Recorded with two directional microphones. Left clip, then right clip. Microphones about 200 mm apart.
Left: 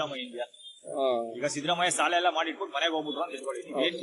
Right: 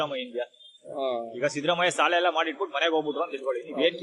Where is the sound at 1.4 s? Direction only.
45° right (ahead or behind).